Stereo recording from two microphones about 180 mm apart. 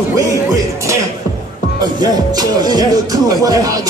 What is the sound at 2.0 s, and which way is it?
Speech, 20° right (ahead or behind).